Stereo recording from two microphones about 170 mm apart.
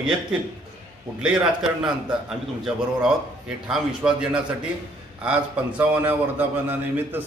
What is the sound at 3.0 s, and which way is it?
A man's voice, 5° right (ahead or behind).